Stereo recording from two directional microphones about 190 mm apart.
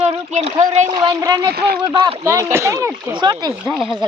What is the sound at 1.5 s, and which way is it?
Speech, 55° right (ahead or behind).